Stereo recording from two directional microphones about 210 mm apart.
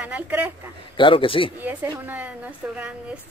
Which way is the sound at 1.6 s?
10° right (ahead or behind).